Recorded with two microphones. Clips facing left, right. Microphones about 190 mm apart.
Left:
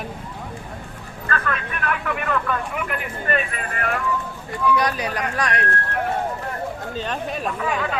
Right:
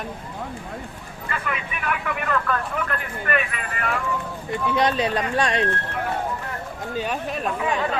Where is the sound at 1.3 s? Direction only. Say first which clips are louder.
Left 3 dB; 10° right (ahead or behind); by 3.1 s 15° left (ahead or behind).